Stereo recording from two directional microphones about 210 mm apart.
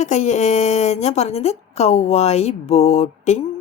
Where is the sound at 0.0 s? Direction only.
35° left (ahead or behind).